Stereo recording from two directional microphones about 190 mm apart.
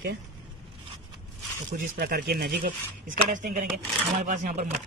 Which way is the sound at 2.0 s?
50° right (ahead or behind).